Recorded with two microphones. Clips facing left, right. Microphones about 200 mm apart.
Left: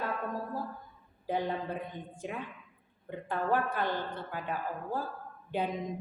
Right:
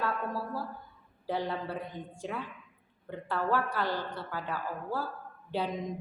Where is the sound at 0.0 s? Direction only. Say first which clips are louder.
Right 2 dB; 15° left (ahead or behind).